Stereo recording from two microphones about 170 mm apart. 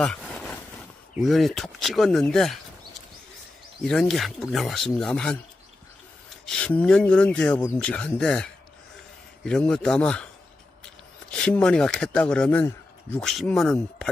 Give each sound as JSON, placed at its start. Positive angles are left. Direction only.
{"t": 0.0, "sound": "vehicle", "side_deg": 5}
{"t": 1.2, "sound": "speech", "side_deg": 0}
{"t": 3.8, "sound": "speech", "side_deg": 5}
{"t": 6.4, "sound": "speech", "side_deg": 5}
{"t": 11.3, "sound": "speech", "side_deg": 5}